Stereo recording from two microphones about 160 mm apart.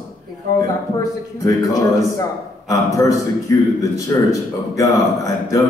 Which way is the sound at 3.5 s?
20° left (ahead or behind).